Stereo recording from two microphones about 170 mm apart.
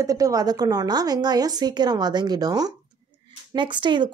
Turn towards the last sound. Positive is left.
turn(degrees=-25)  # may be behind; listen again after turning